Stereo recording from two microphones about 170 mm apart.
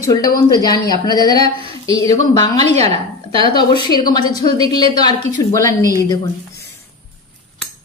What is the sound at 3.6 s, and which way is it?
A woman's voice, 25° left (ahead or behind).